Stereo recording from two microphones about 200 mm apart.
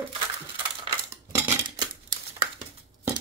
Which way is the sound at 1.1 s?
15° right (ahead or behind).